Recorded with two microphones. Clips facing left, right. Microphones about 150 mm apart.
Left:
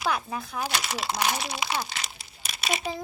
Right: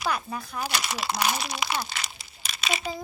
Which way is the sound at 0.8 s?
25° left (ahead or behind).